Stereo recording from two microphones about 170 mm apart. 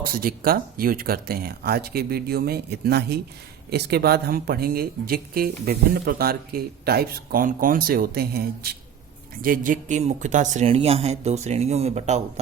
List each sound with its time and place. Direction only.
0.0 s speech: 60° right (ahead or behind); by 12.2 s 40° right (ahead or behind)